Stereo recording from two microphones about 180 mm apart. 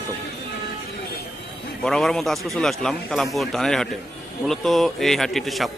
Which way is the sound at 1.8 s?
Centre (ahead or behind).